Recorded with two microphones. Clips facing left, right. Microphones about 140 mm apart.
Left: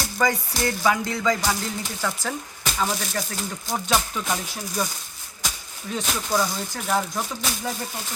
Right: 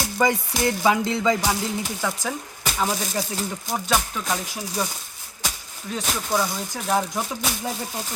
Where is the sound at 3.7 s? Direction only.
5° right (ahead or behind).